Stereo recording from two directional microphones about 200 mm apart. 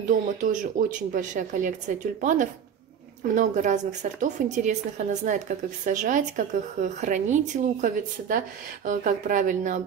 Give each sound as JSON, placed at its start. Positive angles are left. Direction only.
{"t": 0.1, "sound": "a woman's voice", "side_deg": -40}